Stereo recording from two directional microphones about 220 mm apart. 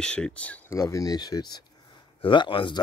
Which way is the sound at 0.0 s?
5° left (ahead or behind).